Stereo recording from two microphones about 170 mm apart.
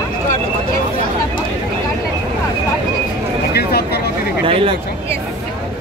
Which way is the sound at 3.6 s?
70° left (ahead or behind).